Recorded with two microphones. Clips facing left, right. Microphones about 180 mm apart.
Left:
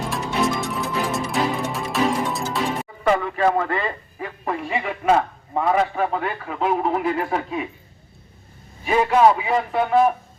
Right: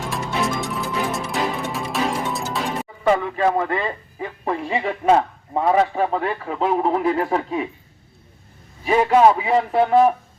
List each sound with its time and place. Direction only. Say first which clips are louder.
0.1 s music: left 1 dB; centre (ahead or behind)
3.0 s speech: right 1 dB; 20° right (ahead or behind); by 7.6 s 35° right (ahead or behind)
8.8 s speech: right 2 dB; 35° right (ahead or behind)